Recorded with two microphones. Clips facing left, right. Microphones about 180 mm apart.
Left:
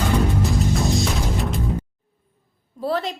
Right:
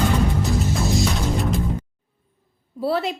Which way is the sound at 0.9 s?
Centre (ahead or behind).